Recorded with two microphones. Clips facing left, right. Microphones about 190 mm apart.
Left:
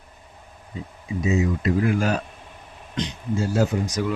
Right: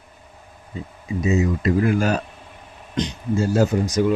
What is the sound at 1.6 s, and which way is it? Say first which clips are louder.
Speech: right 2 dB; 45° right (ahead or behind).